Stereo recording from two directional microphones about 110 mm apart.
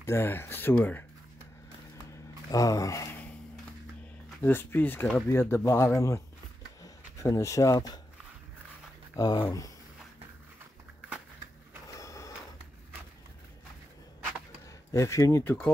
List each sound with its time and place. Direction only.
0.0 s speech: 20° left (ahead or behind)
2.5 s speech: 30° left (ahead or behind)
4.4 s speech: 20° left (ahead or behind); by 8.0 s 35° left (ahead or behind)
9.1 s speech: 35° left (ahead or behind)
11.9 s a sound: 30° left (ahead or behind)
14.9 s speech: 30° left (ahead or behind)
15.4 s speech: 15° left (ahead or behind)